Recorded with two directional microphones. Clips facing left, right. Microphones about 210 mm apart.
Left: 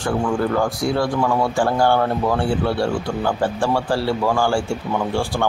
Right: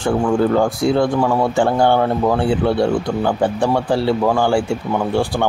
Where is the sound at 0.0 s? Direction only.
25° right (ahead or behind).